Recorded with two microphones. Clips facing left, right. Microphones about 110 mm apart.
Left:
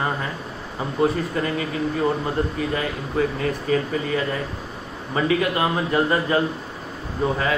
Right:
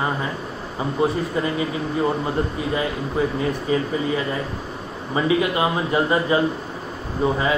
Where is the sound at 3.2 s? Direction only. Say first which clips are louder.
Even; 15° right (ahead or behind).